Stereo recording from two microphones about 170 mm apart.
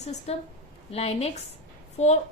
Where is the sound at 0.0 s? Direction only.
40° left (ahead or behind).